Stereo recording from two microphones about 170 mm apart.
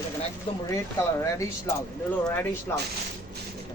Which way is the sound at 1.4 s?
15° left (ahead or behind).